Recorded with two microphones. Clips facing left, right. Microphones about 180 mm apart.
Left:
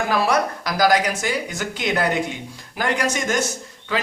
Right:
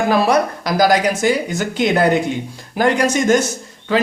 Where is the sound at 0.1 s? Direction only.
25° right (ahead or behind).